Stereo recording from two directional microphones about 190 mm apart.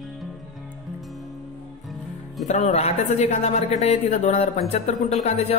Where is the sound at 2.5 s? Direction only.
35° left (ahead or behind).